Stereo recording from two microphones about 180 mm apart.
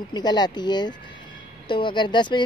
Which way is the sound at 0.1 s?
25° left (ahead or behind).